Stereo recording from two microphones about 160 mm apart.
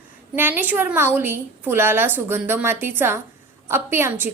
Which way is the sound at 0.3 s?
15° right (ahead or behind).